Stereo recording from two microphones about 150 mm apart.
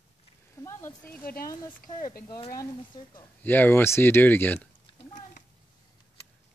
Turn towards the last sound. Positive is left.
turn(degrees=10)  # may be behind; listen again after turning